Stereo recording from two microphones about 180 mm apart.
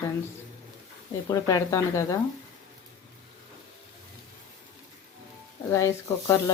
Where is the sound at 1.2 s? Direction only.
20° left (ahead or behind).